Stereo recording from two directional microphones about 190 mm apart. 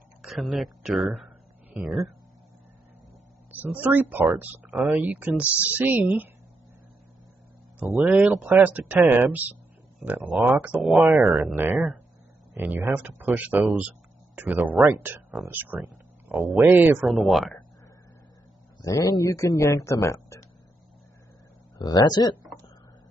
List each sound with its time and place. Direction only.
0.2 s a sound: centre (ahead or behind)
3.5 s speech: 10° right (ahead or behind)
7.9 s speech: 5° right (ahead or behind)
18.8 s speech: 15° left (ahead or behind)
21.7 s speech: 20° left (ahead or behind)